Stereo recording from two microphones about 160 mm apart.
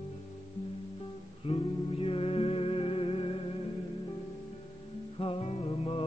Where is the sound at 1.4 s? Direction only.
35° left (ahead or behind).